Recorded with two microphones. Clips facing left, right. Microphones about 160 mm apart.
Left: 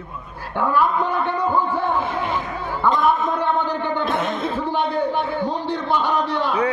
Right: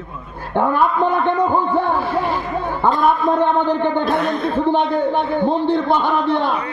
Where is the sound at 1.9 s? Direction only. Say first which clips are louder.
Right 3 dB; 20° left (ahead or behind).